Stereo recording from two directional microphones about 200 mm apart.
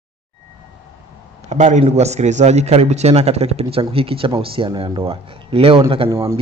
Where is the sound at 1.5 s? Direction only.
35° right (ahead or behind).